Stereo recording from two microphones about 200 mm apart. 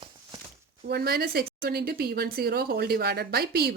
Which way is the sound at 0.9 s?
50° right (ahead or behind).